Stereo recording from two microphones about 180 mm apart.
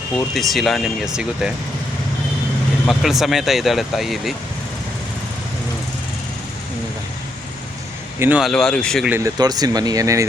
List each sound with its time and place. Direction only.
0.2 s speech: centre (ahead or behind)
2.8 s speech: centre (ahead or behind)
8.2 s speech: 10° right (ahead or behind)
8.4 s speech: 5° left (ahead or behind)
9.0 s speech: 15° right (ahead or behind)